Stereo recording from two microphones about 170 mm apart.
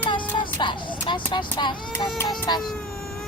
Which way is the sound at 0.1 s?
30° left (ahead or behind).